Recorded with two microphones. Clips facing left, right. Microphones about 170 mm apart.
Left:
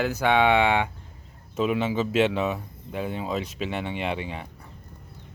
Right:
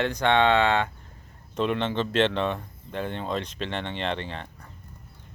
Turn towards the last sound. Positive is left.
turn(degrees=10)  # may be behind; listen again after turning